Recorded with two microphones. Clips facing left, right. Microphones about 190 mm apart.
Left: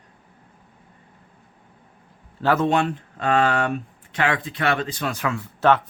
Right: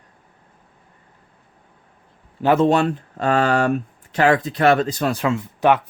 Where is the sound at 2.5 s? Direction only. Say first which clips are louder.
Right 5 dB; 35° right (ahead or behind).